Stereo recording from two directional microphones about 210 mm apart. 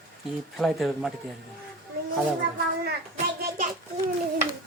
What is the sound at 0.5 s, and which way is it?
Speech, centre (ahead or behind).